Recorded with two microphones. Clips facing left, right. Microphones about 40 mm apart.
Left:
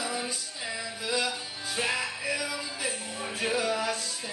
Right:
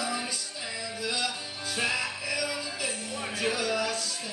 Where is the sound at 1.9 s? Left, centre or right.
Left.